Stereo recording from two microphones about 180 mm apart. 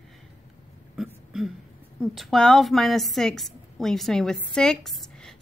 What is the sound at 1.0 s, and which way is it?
Throat clearing, centre (ahead or behind).